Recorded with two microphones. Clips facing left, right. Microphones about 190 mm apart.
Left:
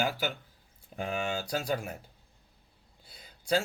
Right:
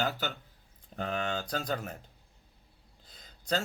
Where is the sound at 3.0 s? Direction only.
10° left (ahead or behind).